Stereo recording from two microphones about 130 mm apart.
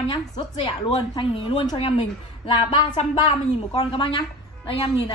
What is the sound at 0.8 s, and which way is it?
A woman's voice, 45° left (ahead or behind).